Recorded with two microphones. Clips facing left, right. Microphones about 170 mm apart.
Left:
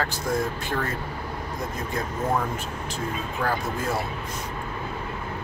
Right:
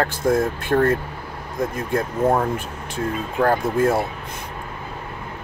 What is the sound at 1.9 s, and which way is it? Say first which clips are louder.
Speech: right 7 dB; 50° right (ahead or behind).